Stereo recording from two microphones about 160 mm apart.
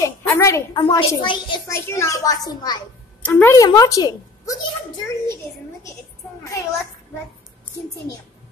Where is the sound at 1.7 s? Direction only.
15° left (ahead or behind).